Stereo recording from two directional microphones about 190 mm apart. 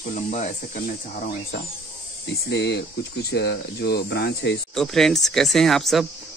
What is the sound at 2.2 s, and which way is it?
Speech, 65° left (ahead or behind).